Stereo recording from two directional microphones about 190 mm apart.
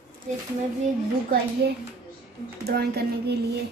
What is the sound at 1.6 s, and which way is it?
Speech, 60° right (ahead or behind).